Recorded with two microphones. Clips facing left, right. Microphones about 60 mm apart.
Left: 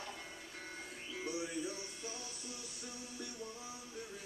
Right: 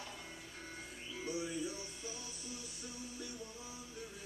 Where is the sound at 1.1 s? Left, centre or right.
Left.